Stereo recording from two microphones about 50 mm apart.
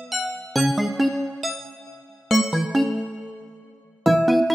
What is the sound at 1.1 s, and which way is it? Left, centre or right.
Music, centre.